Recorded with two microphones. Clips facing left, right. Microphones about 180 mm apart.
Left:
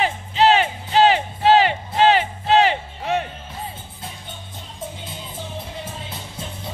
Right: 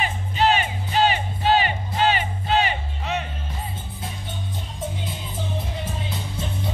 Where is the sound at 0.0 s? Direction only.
90° left.